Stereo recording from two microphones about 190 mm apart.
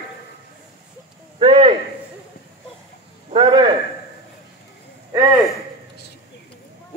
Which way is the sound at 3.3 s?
25° right (ahead or behind).